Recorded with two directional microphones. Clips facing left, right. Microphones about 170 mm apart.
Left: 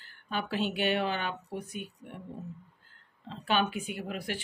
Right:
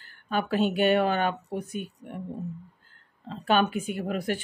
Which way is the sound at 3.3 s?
45° right (ahead or behind).